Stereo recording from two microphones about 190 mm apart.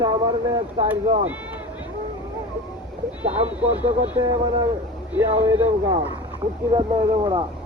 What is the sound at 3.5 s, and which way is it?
Speech, 5° right (ahead or behind).